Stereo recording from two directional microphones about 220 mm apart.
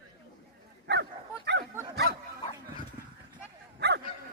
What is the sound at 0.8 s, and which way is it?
Dog, 50° right (ahead or behind).